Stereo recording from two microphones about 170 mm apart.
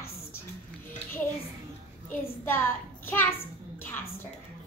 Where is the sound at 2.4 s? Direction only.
10° left (ahead or behind).